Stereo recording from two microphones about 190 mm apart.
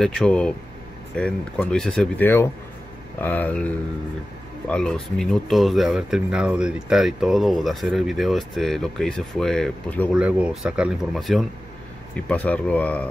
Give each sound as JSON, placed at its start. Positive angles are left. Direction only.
{"t": 0.0, "sound": "speech", "side_deg": 5}
{"t": 10.1, "sound": "speech", "side_deg": -5}